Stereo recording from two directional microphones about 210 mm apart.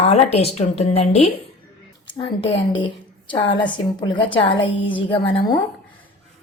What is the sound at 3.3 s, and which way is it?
Speech, 25° left (ahead or behind).